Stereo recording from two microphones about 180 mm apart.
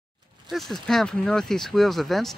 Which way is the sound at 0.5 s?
Centre (ahead or behind).